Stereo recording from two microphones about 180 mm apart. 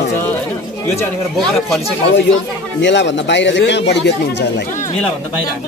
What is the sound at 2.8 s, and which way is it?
Speech, 80° left.